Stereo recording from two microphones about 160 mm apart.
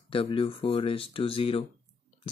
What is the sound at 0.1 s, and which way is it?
Speech, 35° left (ahead or behind).